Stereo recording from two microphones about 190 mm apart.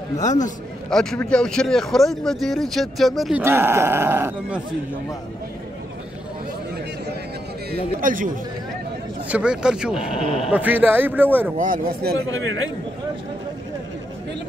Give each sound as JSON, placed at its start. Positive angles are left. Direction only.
{"t": 0.2, "sound": "speech", "side_deg": 40}
{"t": 0.8, "sound": "speech", "side_deg": 5}
{"t": 3.4, "sound": "speech", "side_deg": -15}
{"t": 7.7, "sound": "speech", "side_deg": -45}
{"t": 9.3, "sound": "speech", "side_deg": -5}
{"t": 9.9, "sound": "speech", "side_deg": 30}
{"t": 10.5, "sound": "speech", "side_deg": -10}
{"t": 11.5, "sound": "speech", "side_deg": -45}